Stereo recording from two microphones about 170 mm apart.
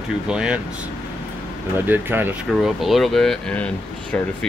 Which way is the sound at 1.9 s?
10° right (ahead or behind).